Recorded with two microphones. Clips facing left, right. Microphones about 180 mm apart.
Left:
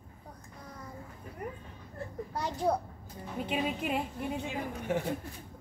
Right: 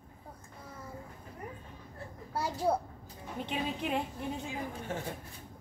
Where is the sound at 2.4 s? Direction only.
5° right (ahead or behind).